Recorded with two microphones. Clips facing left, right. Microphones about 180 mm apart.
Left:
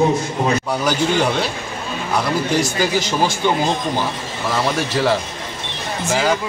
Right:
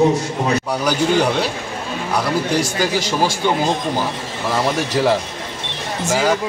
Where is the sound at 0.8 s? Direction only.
10° right (ahead or behind).